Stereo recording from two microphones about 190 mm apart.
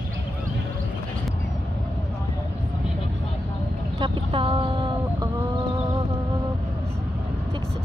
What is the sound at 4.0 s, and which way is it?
Chicken, 25° right (ahead or behind).